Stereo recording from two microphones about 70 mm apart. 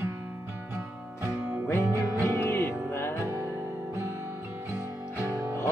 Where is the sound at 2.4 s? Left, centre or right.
Left.